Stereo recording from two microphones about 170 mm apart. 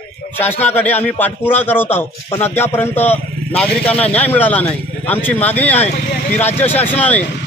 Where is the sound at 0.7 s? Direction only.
10° left (ahead or behind).